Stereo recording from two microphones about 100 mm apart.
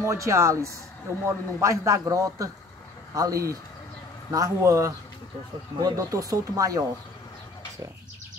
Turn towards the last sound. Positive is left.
turn(degrees=-35)  # may be behind; listen again after turning